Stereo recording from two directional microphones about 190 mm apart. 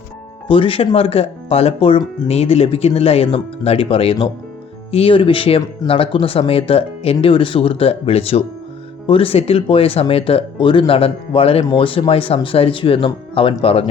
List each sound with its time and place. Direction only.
0.4 s speech: 30° left (ahead or behind)